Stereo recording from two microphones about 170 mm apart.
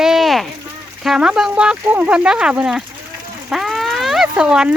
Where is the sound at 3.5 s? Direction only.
Centre (ahead or behind).